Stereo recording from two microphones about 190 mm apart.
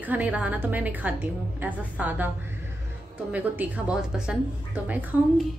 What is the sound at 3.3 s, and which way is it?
A woman's voice, 10° right (ahead or behind).